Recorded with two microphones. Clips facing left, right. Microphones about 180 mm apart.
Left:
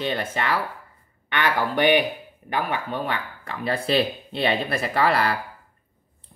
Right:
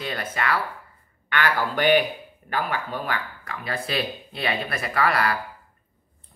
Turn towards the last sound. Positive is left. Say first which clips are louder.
# left 2 dB
turn(degrees=30)  # may be behind; listen again after turning